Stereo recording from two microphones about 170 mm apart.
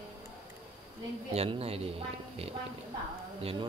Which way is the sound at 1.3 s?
35° right (ahead or behind).